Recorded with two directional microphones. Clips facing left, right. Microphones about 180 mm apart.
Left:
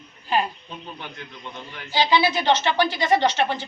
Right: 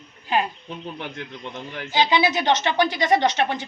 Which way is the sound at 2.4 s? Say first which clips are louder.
Even; 15° right (ahead or behind).